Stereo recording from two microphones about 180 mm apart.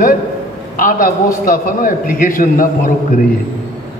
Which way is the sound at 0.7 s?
50° left (ahead or behind).